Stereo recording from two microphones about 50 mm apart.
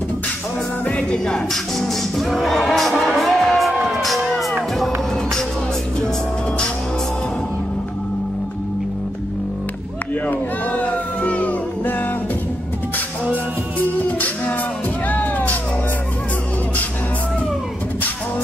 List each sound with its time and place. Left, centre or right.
0.8 s speech: left; by 2.9 s centre
3.2 s music: centre
10.2 s music: left
13.7 s music: left